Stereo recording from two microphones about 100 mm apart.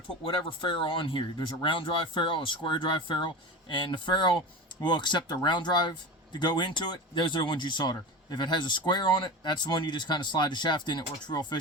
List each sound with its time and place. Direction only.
0.3 s speech: 60° left (ahead or behind)